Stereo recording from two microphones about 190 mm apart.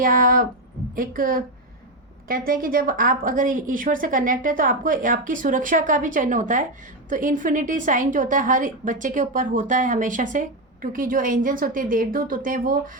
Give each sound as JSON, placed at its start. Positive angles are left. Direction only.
{"t": 0.0, "sound": "a woman's voice", "side_deg": -45}